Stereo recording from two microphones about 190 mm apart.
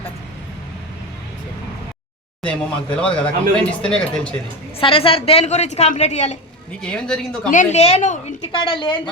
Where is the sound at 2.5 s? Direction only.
5° left (ahead or behind).